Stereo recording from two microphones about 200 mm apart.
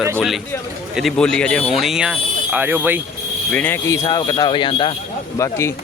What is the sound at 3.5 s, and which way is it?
Speech, 10° left (ahead or behind).